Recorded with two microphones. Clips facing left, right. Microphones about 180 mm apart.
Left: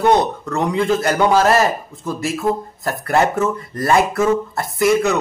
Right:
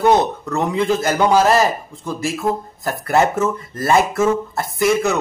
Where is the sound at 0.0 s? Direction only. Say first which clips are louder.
Even; centre (ahead or behind).